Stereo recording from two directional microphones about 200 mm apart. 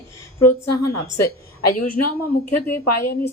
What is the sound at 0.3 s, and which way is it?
Speech, 15° left (ahead or behind).